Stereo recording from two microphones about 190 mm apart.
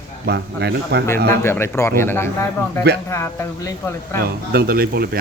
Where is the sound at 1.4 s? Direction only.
10° left (ahead or behind).